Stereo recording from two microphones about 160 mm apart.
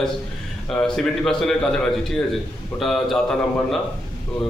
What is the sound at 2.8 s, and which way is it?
Speech, centre (ahead or behind).